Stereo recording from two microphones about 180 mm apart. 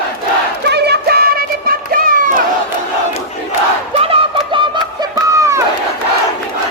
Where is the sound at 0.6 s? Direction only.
65° right (ahead or behind).